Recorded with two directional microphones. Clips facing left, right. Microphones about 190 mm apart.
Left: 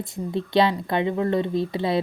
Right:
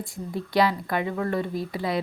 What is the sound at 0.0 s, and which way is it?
Speech, 25° left (ahead or behind).